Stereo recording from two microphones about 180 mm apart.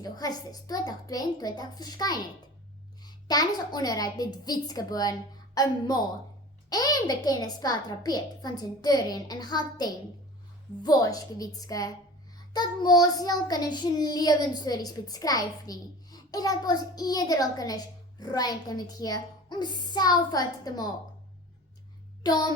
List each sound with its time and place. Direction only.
0.0 s child singing: 20° left (ahead or behind)
22.2 s child singing: 20° left (ahead or behind)